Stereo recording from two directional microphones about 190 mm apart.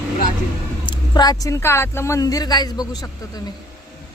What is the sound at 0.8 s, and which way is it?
Speech, 25° left (ahead or behind).